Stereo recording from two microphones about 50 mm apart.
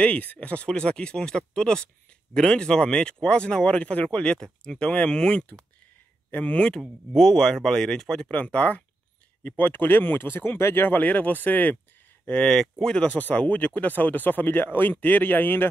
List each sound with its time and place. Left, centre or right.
0.0 s speech: left
7.2 s speech: centre
8.2 s speech: left
9.6 s speech: left
12.4 s speech: centre
12.8 s speech: left